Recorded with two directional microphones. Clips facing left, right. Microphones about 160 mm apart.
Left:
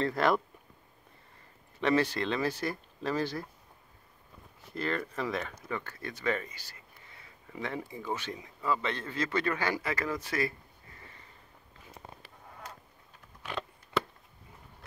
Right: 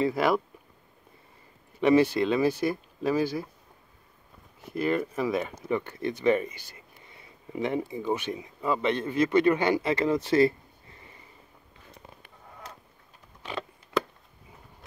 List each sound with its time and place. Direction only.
0.0 s speech: 10° right (ahead or behind)
1.8 s speech: 10° right (ahead or behind)
4.7 s speech: 15° right (ahead or behind)